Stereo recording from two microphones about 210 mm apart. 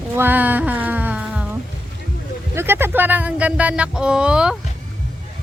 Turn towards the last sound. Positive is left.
turn(degrees=-5)  # may be behind; listen again after turning